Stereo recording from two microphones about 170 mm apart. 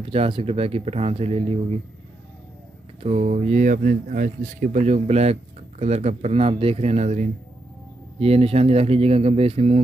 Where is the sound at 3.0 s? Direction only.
40° right (ahead or behind).